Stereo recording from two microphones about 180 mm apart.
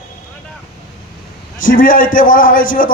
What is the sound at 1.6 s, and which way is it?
Speech, 50° left (ahead or behind).